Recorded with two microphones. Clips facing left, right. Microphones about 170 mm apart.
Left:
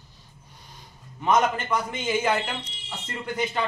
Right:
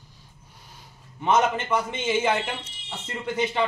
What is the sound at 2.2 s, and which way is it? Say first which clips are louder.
Speech: even; 5° right (ahead or behind).